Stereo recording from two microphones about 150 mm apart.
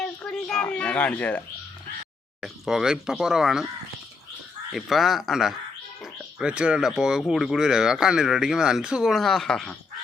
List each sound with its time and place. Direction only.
0.0 s speech: 5° left (ahead or behind)
2.4 s speech: 5° right (ahead or behind)
4.7 s speech: centre (ahead or behind)